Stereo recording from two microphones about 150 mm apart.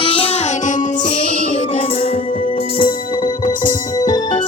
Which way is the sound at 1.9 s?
40° left (ahead or behind).